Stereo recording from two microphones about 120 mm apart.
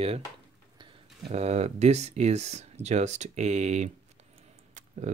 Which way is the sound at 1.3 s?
65° right (ahead or behind).